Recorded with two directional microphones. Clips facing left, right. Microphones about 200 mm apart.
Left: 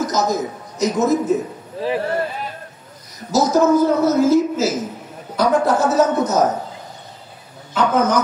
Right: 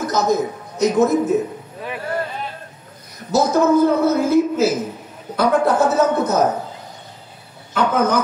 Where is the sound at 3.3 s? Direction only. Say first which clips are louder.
Left 1 dB; 55° right (ahead or behind).